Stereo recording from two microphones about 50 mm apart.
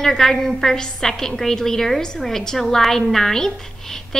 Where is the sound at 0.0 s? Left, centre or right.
Centre.